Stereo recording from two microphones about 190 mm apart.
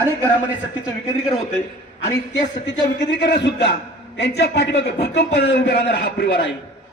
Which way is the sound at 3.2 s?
60° left (ahead or behind).